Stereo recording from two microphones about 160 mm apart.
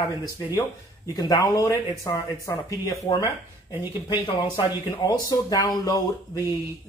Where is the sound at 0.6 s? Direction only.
20° left (ahead or behind).